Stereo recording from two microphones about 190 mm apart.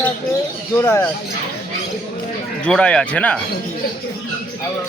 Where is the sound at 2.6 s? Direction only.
5° left (ahead or behind).